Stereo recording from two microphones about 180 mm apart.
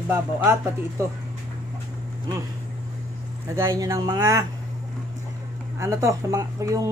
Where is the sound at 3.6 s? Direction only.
15° right (ahead or behind).